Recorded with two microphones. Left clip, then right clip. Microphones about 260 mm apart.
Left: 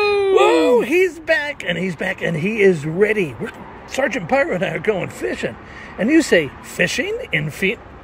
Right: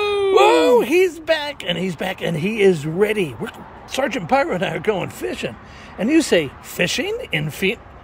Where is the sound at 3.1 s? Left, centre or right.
Right.